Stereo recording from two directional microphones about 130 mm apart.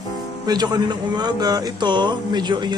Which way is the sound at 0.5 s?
30° right (ahead or behind).